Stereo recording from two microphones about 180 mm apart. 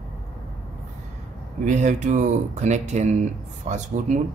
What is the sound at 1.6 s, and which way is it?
Speech, 40° right (ahead or behind).